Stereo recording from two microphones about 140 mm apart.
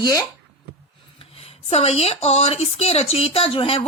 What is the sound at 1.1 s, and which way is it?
A woman's voice, 45° left (ahead or behind).